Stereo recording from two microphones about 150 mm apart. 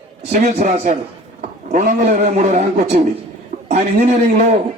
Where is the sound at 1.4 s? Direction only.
65° right (ahead or behind); by 3.0 s 45° right (ahead or behind).